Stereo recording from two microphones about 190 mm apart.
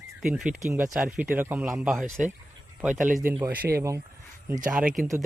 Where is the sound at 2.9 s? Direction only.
45° right (ahead or behind).